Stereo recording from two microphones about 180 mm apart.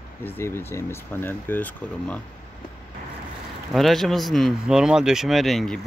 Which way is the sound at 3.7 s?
Centre (ahead or behind).